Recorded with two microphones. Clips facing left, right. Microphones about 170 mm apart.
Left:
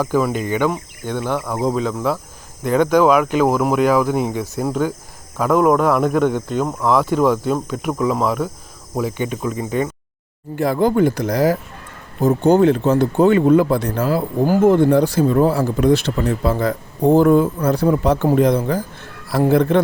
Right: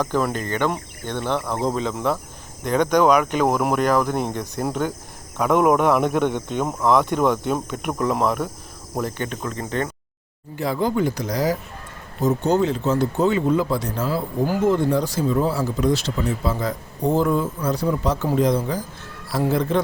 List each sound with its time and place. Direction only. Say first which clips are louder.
0.0 s speech: left 4 dB; 5° left (ahead or behind)
9.0 s speech: left 4 dB; 10° left (ahead or behind)
10.5 s speech: left 6 dB; 55° left (ahead or behind)